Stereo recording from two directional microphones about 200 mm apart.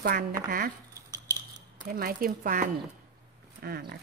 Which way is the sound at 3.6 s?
50° right (ahead or behind).